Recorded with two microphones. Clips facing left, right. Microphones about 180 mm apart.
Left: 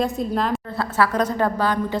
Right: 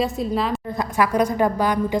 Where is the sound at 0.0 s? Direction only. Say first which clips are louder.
Even; centre (ahead or behind).